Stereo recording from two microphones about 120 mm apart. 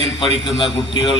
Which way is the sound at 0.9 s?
45° left (ahead or behind).